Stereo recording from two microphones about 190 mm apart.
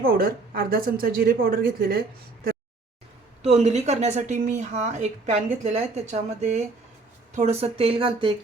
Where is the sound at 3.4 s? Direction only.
35° right (ahead or behind).